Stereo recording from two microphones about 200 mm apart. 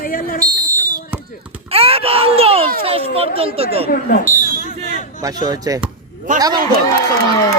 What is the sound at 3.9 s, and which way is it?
Speech, 45° left (ahead or behind).